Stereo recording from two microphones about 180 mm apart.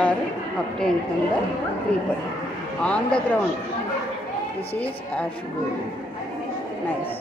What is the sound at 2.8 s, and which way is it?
Speech, 5° left (ahead or behind).